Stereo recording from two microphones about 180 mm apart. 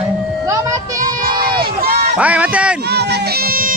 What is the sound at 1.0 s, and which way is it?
Crowd, 50° right (ahead or behind).